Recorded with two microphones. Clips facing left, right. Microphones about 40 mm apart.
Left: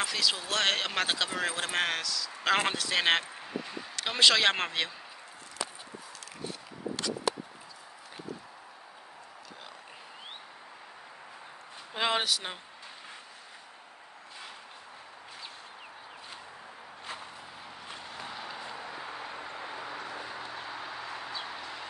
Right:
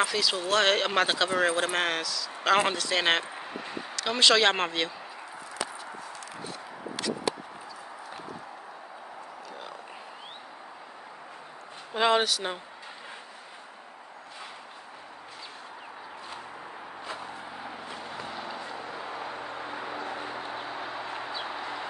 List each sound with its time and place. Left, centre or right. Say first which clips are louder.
0.0 s speech: right 4 dB; centre
3.3 s a sound: right 1 dB; right
4.0 s speech: right 2 dB; centre
11.9 s speech: right 5 dB; centre
17.6 s vehicle: right 5 dB; right
18.2 s vehicle: right 1 dB; centre
19.0 s a sound: right 4 dB; right
20.1 s vehicle: right 4 dB; right
21.5 s bird: right 6 dB; right